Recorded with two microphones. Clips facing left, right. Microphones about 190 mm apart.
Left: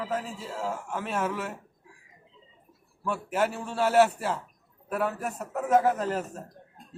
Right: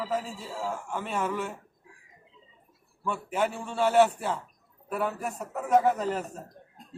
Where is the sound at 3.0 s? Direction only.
5° left (ahead or behind).